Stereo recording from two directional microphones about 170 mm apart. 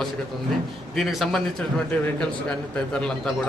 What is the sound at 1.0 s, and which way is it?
A man's voice, centre (ahead or behind).